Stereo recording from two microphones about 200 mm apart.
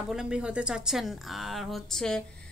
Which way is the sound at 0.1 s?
5° right (ahead or behind).